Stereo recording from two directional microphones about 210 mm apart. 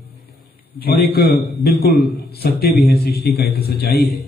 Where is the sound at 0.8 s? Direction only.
50° left (ahead or behind).